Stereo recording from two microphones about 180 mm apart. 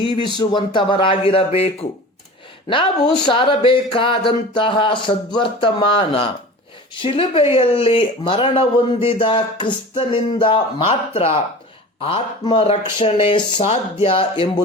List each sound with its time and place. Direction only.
0.2 s speech: 25° left (ahead or behind)